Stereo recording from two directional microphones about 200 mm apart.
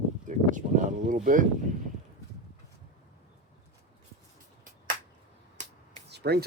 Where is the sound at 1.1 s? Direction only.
40° right (ahead or behind).